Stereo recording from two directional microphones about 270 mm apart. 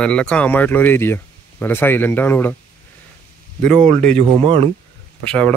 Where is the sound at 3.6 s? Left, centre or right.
Centre.